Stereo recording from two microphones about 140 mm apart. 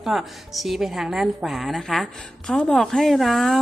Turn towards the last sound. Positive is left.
turn(degrees=0)  # may be behind; listen again after turning